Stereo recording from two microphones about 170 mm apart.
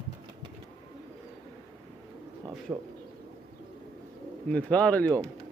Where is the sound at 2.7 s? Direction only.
20° right (ahead or behind).